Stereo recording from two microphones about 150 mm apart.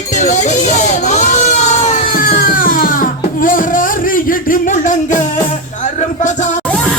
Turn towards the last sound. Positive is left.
turn(degrees=10)  # may be behind; listen again after turning